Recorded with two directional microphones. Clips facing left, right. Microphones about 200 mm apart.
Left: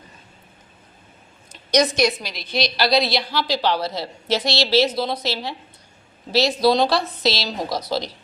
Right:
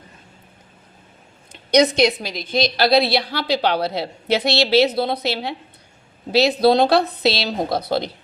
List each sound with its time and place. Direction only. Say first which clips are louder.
1.7 s a woman's voice: right 3 dB; 60° right (ahead or behind)
6.6 s a woman's voice: right 3 dB; 55° right (ahead or behind)